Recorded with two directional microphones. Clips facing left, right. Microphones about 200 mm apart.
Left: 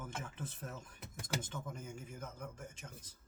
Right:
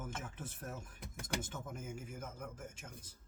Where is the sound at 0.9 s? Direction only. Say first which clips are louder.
Left 1 dB; 5° left (ahead or behind).